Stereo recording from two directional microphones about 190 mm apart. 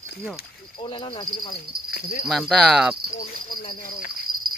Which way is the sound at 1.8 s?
50° left (ahead or behind).